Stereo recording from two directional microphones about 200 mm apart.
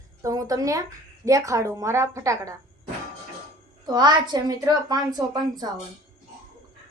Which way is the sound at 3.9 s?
20° right (ahead or behind).